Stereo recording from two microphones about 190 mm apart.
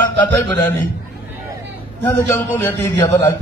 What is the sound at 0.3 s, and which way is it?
Speech, 10° left (ahead or behind).